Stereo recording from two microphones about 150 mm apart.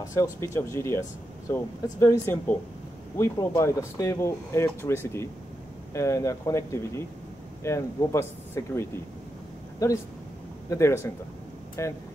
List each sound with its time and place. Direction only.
0.0 s speech: 20° left (ahead or behind)